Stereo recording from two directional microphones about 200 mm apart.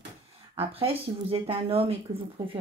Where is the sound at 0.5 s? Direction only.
30° right (ahead or behind).